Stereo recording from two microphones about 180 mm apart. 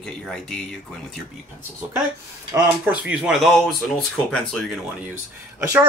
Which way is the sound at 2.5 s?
10° right (ahead or behind).